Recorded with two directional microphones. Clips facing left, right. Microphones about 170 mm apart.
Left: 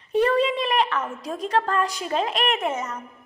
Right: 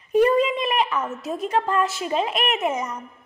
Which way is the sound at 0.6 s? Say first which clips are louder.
Even; 5° right (ahead or behind).